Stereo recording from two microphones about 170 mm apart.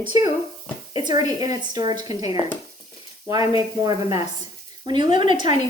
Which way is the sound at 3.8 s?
20° right (ahead or behind).